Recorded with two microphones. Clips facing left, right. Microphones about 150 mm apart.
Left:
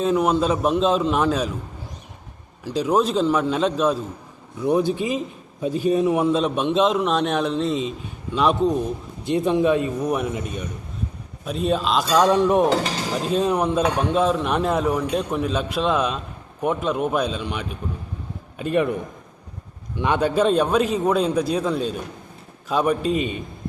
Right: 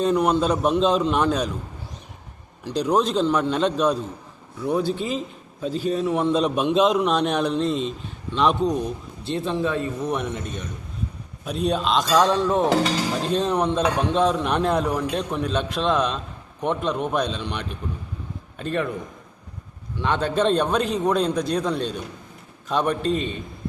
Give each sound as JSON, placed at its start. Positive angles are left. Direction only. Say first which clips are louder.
{"t": 0.0, "sound": "a man's voice", "louder": "even", "side_deg": 0}
{"t": 2.6, "sound": "a man's voice", "louder": "left 1 dB", "side_deg": 5}
{"t": 4.6, "sound": "a man's voice", "louder": "left 3 dB", "side_deg": 15}
{"t": 6.2, "sound": "a man's voice", "louder": "even", "side_deg": 0}
{"t": 9.2, "sound": "a man's voice", "louder": "left 6 dB", "side_deg": 15}
{"t": 12.3, "sound": "a man's voice", "louder": "left 3 dB", "side_deg": 15}
{"t": 20.0, "sound": "a man's voice", "louder": "left 2 dB", "side_deg": 10}